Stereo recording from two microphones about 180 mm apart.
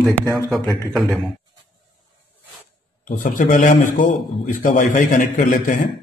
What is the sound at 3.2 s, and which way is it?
A man's voice, 45° left (ahead or behind).